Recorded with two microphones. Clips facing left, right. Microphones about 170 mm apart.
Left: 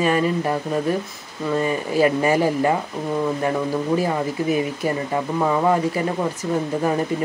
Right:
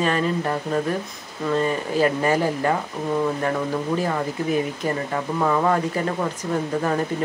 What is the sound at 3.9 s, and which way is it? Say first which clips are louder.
Speech: left 2 dB; 10° left (ahead or behind).